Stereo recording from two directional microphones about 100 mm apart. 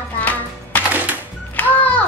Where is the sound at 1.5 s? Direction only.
15° left (ahead or behind).